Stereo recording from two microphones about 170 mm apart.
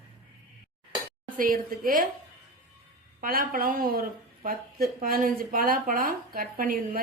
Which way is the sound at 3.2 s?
60° right (ahead or behind).